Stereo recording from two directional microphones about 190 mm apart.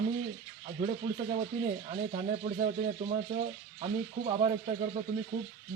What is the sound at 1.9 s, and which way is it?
Speech, 30° right (ahead or behind).